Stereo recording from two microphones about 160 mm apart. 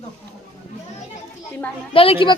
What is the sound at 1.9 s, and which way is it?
Speech, 35° left (ahead or behind).